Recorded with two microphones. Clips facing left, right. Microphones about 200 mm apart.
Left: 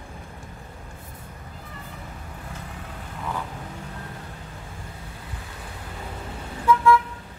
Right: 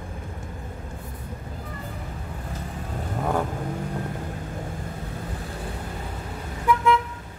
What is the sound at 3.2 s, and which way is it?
Vehicle, 50° right (ahead or behind).